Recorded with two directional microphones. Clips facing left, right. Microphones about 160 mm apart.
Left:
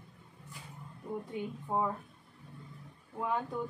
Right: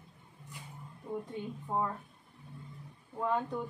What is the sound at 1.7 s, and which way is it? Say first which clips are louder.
Speech: left 1 dB; 10° left (ahead or behind).